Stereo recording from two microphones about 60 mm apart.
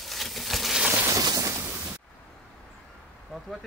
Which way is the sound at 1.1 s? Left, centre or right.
Right.